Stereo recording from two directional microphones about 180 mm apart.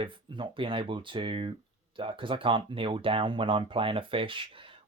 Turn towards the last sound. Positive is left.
turn(degrees=-30)  # may be behind; listen again after turning